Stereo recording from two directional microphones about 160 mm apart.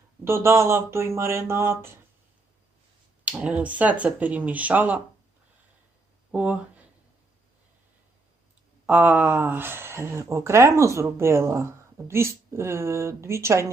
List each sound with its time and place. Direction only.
0.3 s speech: 15° right (ahead or behind)
3.2 s speech: 10° right (ahead or behind)
6.3 s speech: 10° right (ahead or behind)
8.9 s speech: 10° right (ahead or behind)